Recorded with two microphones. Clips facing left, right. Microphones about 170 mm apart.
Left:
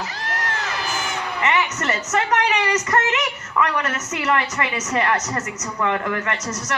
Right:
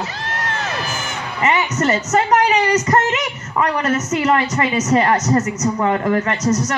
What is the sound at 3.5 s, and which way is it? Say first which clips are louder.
A woman's voice: right 4 dB; 30° right (ahead or behind).